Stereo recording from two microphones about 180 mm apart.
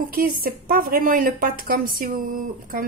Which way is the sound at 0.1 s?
55° right (ahead or behind).